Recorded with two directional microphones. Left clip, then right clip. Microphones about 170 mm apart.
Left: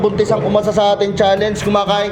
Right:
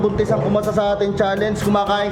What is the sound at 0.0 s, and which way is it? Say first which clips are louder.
Speech: left 4 dB; 10° right (ahead or behind).